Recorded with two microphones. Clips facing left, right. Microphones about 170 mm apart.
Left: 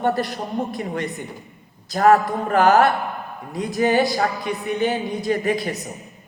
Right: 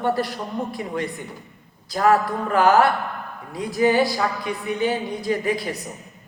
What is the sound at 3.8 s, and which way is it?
Speech, 55° left (ahead or behind).